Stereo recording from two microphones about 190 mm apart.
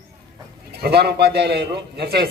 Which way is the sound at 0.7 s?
60° right (ahead or behind).